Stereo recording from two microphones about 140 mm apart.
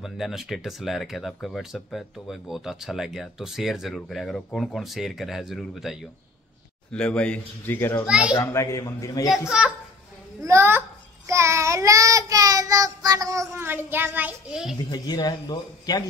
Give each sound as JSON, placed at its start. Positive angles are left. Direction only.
{"t": 0.0, "sound": "speech", "side_deg": 0}
{"t": 9.5, "sound": "speech", "side_deg": -5}
{"t": 10.4, "sound": "child singing", "side_deg": -20}
{"t": 14.9, "sound": "speech", "side_deg": 30}